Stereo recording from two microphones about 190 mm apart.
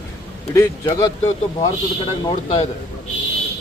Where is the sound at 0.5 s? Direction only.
20° left (ahead or behind).